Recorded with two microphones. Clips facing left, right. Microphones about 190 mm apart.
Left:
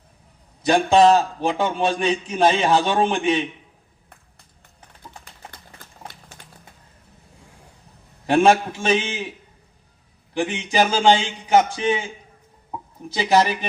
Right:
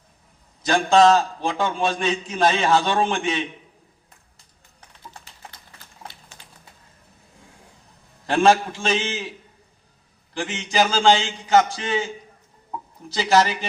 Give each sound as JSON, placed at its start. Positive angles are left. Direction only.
{"t": 0.7, "sound": "a man's voice", "side_deg": 15}
{"t": 8.3, "sound": "a man's voice", "side_deg": 15}
{"t": 10.3, "sound": "a man's voice", "side_deg": 15}
{"t": 13.1, "sound": "a man's voice", "side_deg": 15}